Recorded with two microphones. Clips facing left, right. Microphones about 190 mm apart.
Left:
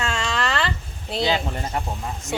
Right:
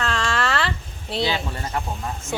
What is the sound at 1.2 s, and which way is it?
Speech, 20° left (ahead or behind).